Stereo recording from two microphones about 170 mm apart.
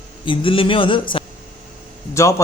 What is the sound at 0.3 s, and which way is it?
Speech, 30° left (ahead or behind).